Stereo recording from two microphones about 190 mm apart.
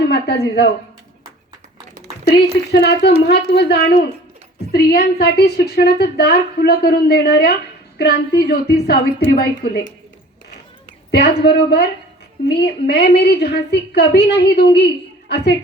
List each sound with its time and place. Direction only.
0.0 s a woman's voice: 60° left (ahead or behind)
2.7 s a woman's voice: 65° left (ahead or behind)
11.1 s a woman's voice: 60° left (ahead or behind)